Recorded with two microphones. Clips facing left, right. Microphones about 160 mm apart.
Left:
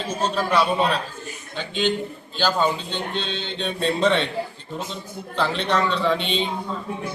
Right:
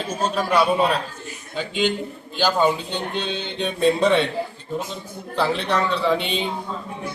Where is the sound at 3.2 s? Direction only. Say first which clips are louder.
Right 2 dB; 15° right (ahead or behind).